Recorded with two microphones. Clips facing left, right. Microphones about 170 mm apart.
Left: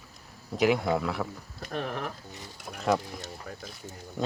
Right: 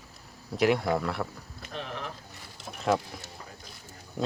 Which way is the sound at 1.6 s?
50° left (ahead or behind).